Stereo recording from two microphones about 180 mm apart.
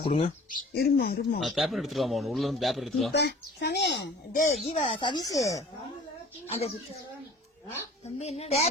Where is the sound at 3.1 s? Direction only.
70° left (ahead or behind).